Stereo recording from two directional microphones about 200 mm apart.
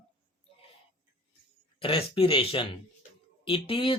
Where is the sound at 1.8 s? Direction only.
25° left (ahead or behind).